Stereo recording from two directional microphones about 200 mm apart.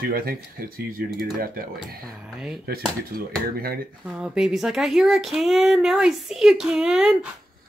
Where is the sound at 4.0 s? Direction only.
5° right (ahead or behind).